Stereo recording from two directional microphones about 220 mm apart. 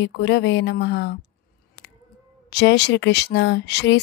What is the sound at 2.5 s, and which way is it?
Speech, 50° left (ahead or behind).